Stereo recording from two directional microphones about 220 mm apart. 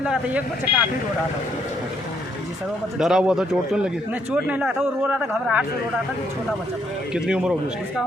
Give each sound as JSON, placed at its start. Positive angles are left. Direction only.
{"t": 0.0, "sound": "a man's voice", "side_deg": -5}
{"t": 3.0, "sound": "a man's voice", "side_deg": -5}
{"t": 7.1, "sound": "a man's voice", "side_deg": -5}